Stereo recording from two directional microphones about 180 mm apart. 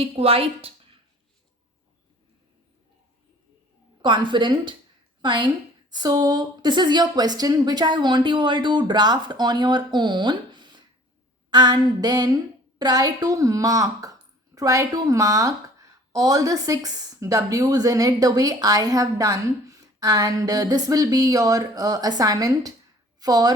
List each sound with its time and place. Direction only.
0.0 s a woman's voice: 30° right (ahead or behind)
4.0 s a woman's voice: 25° right (ahead or behind)